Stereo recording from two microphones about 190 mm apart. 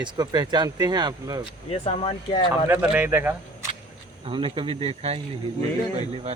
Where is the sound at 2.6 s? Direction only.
10° right (ahead or behind).